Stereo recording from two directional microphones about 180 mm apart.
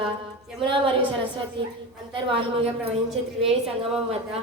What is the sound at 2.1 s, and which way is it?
Speech, 30° right (ahead or behind).